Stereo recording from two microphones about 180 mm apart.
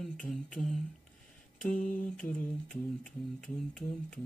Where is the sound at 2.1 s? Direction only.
10° left (ahead or behind).